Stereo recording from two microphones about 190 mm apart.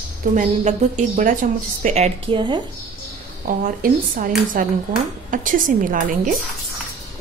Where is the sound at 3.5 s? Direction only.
45° right (ahead or behind).